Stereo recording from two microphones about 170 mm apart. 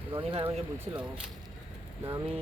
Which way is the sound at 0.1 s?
30° right (ahead or behind).